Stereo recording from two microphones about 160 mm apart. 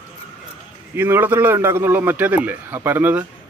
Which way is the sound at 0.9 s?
15° right (ahead or behind).